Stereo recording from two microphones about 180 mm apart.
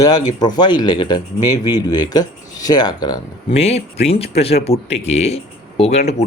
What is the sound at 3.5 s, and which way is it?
Speech, 35° left (ahead or behind).